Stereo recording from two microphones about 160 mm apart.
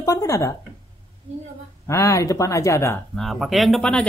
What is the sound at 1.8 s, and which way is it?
Speech, 20° left (ahead or behind).